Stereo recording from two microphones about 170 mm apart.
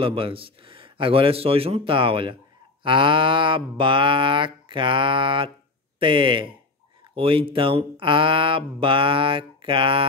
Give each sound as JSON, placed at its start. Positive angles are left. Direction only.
{"t": 0.0, "sound": "speech", "side_deg": -30}
{"t": 2.8, "sound": "livestock", "side_deg": -30}
{"t": 5.9, "sound": "speech", "side_deg": -30}